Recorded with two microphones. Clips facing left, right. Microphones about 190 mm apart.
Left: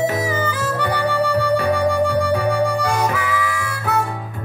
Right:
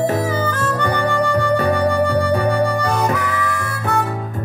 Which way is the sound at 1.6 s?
45° right (ahead or behind).